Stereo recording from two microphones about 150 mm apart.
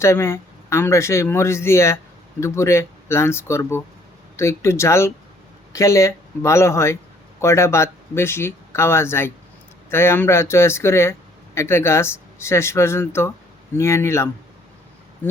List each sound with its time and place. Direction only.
0.0 s speech: 20° left (ahead or behind)